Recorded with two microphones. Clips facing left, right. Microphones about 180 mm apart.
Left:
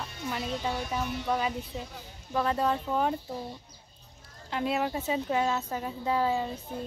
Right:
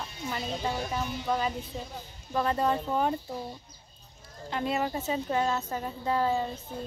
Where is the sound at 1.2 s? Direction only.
5° left (ahead or behind).